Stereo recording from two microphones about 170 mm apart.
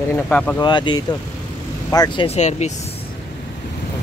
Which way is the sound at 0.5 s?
25° left (ahead or behind).